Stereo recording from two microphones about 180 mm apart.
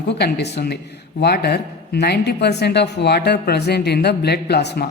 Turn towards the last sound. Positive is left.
turn(degrees=65)  # may be behind; listen again after turning